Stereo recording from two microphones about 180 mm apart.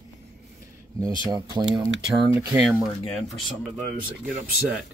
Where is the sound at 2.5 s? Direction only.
5° right (ahead or behind).